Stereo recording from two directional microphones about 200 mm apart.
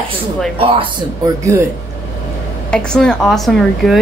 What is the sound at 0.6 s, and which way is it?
Speech, 30° right (ahead or behind).